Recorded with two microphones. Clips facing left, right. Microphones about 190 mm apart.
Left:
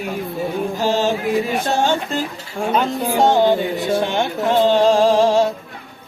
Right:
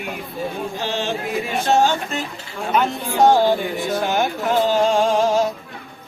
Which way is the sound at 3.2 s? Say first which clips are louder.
Even; 20° left (ahead or behind).